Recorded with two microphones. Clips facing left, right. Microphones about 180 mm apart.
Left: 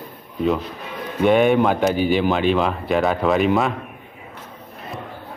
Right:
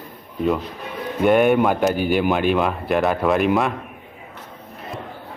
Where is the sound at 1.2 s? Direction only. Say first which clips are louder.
Even; 5° right (ahead or behind).